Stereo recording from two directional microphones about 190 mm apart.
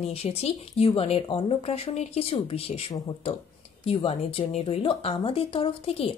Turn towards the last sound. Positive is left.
turn(degrees=30)  # may be behind; listen again after turning